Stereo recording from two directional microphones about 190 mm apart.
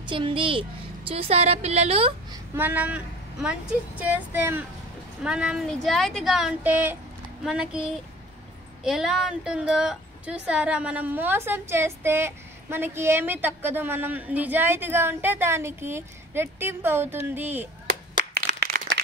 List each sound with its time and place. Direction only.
0.0 s speech: 25° right (ahead or behind)
2.5 s a woman's voice: 10° right (ahead or behind)
4.0 s a woman's voice: 10° right (ahead or behind)
18.3 s a sound: 55° right (ahead or behind)